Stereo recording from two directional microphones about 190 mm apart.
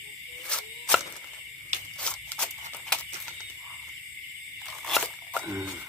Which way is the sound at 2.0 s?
5° left (ahead or behind).